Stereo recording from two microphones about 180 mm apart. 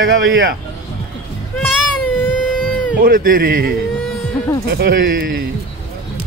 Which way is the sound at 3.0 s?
50° right (ahead or behind).